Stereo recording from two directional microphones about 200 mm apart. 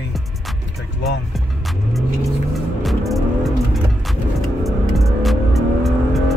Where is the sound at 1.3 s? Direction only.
Centre (ahead or behind).